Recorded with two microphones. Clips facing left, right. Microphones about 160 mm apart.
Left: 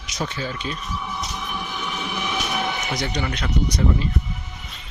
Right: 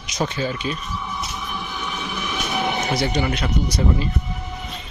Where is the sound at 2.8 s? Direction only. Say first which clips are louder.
Right 5 dB; 40° right (ahead or behind).